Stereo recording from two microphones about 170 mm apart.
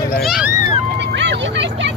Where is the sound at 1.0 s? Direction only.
90° right.